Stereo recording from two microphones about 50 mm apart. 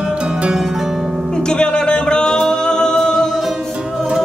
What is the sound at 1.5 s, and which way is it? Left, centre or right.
Music, centre.